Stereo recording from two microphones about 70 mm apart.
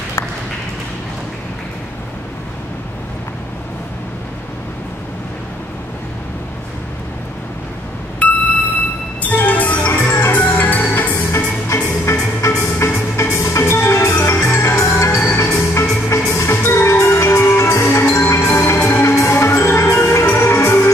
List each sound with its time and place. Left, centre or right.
8.2 s a sound: centre
9.2 s music: left
11.3 s music: left